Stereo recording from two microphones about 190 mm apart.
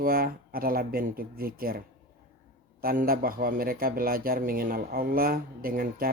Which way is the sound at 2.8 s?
50° right (ahead or behind).